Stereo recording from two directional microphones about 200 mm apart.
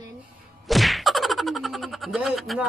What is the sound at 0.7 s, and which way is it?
Speech, centre (ahead or behind).